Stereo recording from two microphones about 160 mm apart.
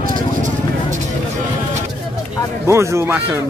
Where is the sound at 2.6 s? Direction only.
15° right (ahead or behind).